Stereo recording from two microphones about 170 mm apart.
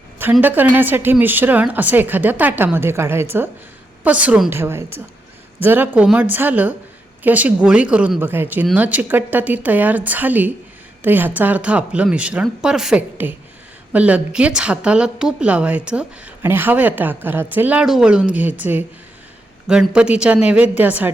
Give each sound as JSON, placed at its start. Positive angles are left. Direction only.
{"t": 0.2, "sound": "a woman's voice", "side_deg": -10}